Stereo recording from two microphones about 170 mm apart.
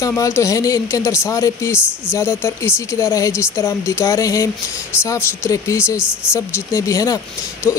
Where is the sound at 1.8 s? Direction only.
5° right (ahead or behind).